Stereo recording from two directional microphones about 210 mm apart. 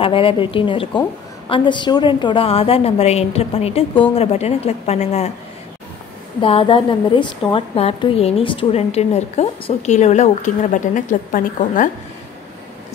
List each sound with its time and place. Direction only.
0.0 s a woman's voice: 25° left (ahead or behind)
6.4 s a woman's voice: 25° left (ahead or behind)